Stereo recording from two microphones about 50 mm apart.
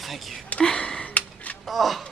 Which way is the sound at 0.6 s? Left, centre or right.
Centre.